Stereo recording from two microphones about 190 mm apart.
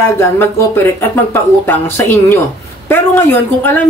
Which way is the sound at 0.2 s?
10° left (ahead or behind).